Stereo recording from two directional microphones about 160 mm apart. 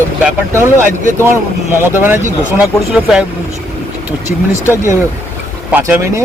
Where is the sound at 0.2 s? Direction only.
10° right (ahead or behind).